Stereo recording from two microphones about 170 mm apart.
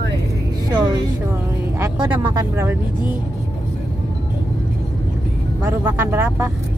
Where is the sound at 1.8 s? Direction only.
25° right (ahead or behind).